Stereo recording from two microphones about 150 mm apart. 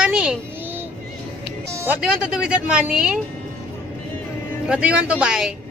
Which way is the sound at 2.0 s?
5° right (ahead or behind).